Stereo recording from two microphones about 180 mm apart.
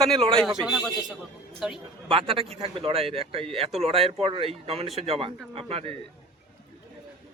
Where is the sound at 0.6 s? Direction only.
Centre (ahead or behind).